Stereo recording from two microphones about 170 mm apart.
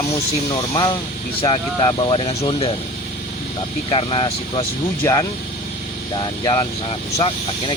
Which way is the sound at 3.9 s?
30° left (ahead or behind).